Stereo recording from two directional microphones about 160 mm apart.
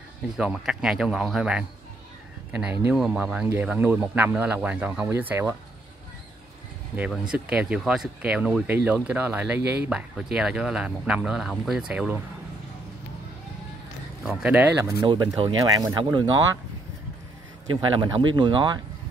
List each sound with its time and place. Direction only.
0.4 s speech: 5° right (ahead or behind)
7.1 s speech: 5° right (ahead or behind)
14.2 s speech: 10° right (ahead or behind)
15.0 s speech: 30° right (ahead or behind)
17.9 s speech: 30° right (ahead or behind)